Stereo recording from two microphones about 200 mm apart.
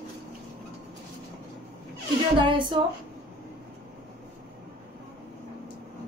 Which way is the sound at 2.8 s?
25° right (ahead or behind).